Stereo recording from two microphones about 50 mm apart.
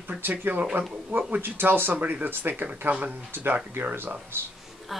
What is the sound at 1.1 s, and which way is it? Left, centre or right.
Speech, right.